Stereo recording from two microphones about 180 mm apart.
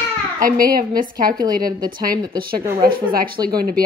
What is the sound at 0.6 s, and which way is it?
Speech, 50° right (ahead or behind).